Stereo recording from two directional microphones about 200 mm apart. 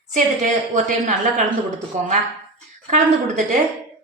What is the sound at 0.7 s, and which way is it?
Speech, 40° right (ahead or behind).